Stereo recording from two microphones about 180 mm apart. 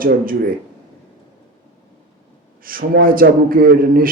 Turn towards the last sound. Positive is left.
turn(degrees=-55)  # may be behind; listen again after turning